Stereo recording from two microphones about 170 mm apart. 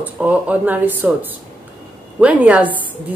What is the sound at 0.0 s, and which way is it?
Speech, 10° right (ahead or behind).